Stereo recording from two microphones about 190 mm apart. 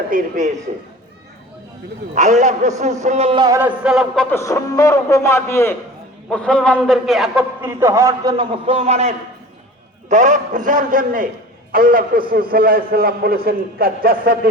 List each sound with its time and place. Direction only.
0.1 s a man's voice: 40° right (ahead or behind)
2.1 s a man's voice: 40° right (ahead or behind)
3.4 s a man's voice: 15° right (ahead or behind)
3.8 s a man's voice: centre (ahead or behind)
4.4 s a man's voice: 15° left (ahead or behind); by 7.4 s centre (ahead or behind)
7.6 s a man's voice: 15° right (ahead or behind); by 14.5 s 50° right (ahead or behind)